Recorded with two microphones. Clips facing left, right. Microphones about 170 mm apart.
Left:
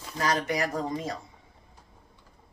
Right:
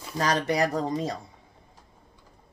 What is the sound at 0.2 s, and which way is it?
Speech, 35° right (ahead or behind).